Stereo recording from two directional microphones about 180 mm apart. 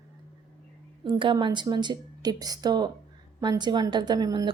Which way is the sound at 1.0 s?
25° right (ahead or behind).